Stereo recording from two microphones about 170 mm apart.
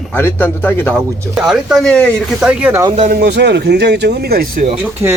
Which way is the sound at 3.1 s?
85° right.